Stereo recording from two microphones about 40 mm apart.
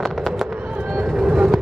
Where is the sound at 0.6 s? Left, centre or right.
Right.